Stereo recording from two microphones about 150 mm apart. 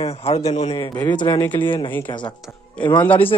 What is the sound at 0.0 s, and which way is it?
Speech, 40° left (ahead or behind).